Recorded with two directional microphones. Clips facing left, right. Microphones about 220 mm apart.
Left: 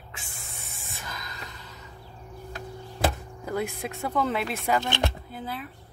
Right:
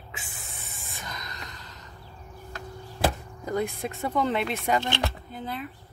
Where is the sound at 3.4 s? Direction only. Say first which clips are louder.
Right 2 dB; 5° left (ahead or behind).